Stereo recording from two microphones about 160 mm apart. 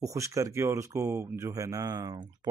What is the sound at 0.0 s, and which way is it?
Speech, 20° right (ahead or behind).